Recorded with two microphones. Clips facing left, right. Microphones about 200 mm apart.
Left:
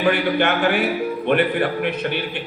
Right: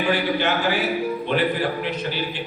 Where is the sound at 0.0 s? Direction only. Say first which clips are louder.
Left 3 dB; 60° left (ahead or behind).